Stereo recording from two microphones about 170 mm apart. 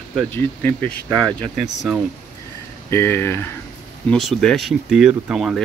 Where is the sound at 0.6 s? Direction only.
10° left (ahead or behind).